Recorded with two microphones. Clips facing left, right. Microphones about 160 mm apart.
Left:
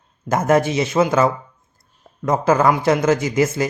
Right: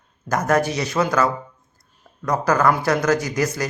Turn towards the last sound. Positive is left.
turn(degrees=20)  # may be behind; listen again after turning